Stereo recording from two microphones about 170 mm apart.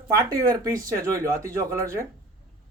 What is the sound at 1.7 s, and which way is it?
Speech, 15° right (ahead or behind).